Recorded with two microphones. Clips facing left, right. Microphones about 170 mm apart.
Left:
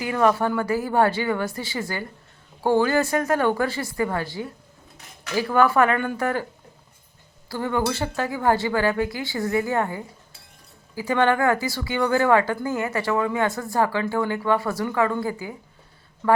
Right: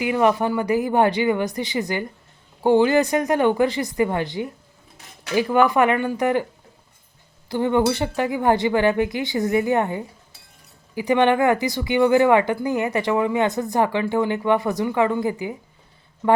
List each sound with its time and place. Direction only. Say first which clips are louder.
0.0 s speech: right 2 dB; 15° right (ahead or behind)
7.4 s speech: right 5 dB; 20° right (ahead or behind)